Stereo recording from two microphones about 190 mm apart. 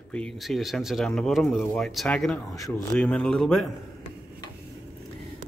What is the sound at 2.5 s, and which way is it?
Speech, 15° left (ahead or behind).